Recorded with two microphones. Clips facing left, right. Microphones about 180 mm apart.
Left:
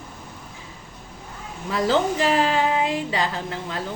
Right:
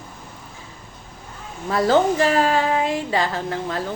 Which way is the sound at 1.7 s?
45° right (ahead or behind).